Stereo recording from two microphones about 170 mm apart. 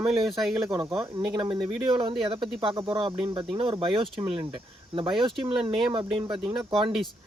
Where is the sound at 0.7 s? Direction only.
20° right (ahead or behind).